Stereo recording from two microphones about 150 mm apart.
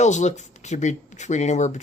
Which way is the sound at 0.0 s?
50° left (ahead or behind).